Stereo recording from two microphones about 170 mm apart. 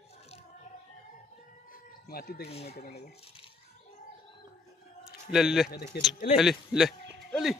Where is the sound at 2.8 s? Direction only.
65° left (ahead or behind).